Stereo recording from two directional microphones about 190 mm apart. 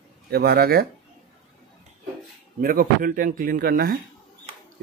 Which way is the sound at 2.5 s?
50° right (ahead or behind).